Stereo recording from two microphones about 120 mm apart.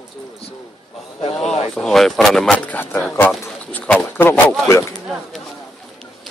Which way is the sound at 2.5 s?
15° left (ahead or behind).